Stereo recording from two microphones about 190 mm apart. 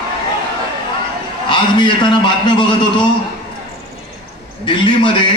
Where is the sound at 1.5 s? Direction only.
25° left (ahead or behind).